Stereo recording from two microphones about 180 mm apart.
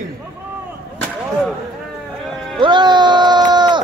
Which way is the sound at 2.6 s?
25° right (ahead or behind).